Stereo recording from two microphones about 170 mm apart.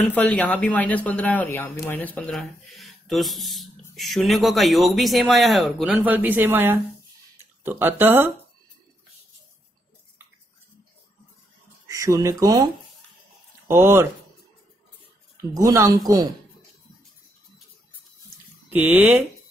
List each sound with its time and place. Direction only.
0.1 s speech: 10° left (ahead or behind); by 8.3 s 10° right (ahead or behind)
11.9 s speech: 20° right (ahead or behind)
13.7 s speech: 15° right (ahead or behind)
15.5 s speech: 20° right (ahead or behind)
18.7 s speech: 10° right (ahead or behind)